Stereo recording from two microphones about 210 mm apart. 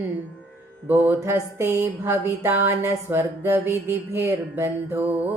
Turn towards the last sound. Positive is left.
turn(degrees=-10)  # may be behind; listen again after turning